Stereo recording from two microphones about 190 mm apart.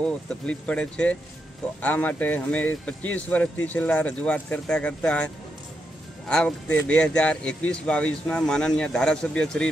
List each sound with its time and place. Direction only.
0.0 s speech: 5° left (ahead or behind)